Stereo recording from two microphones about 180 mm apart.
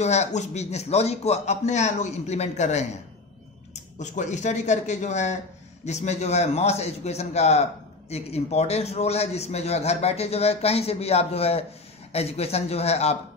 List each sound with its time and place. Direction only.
0.0 s a man's voice: 40° left (ahead or behind)
4.0 s a man's voice: 40° left (ahead or behind)